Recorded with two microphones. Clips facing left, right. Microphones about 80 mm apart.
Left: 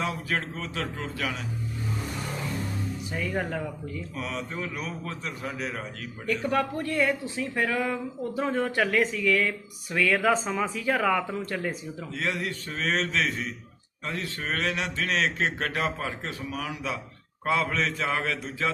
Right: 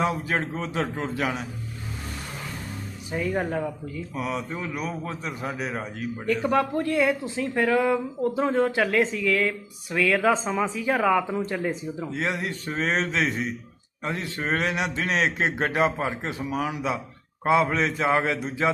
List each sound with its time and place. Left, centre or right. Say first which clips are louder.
0.0 s speech: right 4 dB; right
3.1 s speech: right 7 dB; right
3.3 s a man's voice: right 3 dB; centre
9.9 s a man's voice: right 2 dB; centre; by 18.7 s right